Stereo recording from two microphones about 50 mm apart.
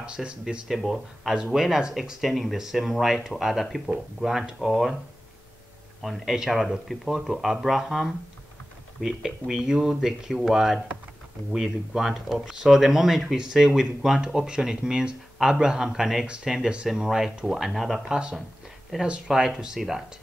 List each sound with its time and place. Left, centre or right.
0.0 s speech: centre
0.7 s speech: centre
6.0 s speech: centre
19.0 s speech: centre